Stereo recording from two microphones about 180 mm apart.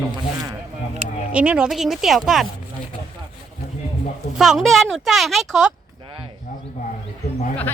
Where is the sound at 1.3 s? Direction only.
5° right (ahead or behind).